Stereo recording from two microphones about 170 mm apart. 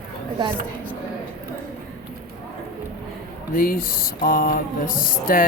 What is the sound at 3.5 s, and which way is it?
Speech, 55° left (ahead or behind).